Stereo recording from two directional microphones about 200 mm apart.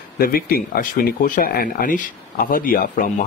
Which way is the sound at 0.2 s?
45° left (ahead or behind).